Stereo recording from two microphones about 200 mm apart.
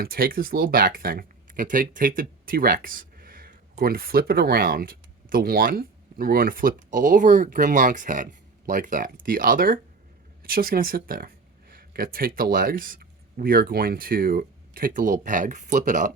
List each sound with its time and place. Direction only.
0.0 s speech: 50° right (ahead or behind)